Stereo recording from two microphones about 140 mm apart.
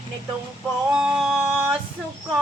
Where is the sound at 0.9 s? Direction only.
5° right (ahead or behind).